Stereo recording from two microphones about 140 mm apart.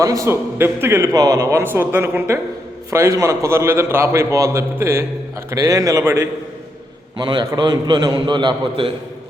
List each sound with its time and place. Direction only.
0.0 s a man's voice: 25° right (ahead or behind)
7.2 s a man's voice: 30° right (ahead or behind)